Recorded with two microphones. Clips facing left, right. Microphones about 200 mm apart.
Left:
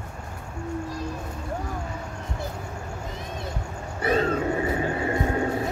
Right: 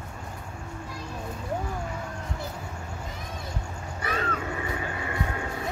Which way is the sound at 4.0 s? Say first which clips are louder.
Left 8 dB; 30° left (ahead or behind).